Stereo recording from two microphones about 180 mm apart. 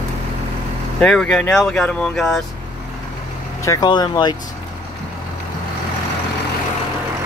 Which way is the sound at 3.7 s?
25° left (ahead or behind).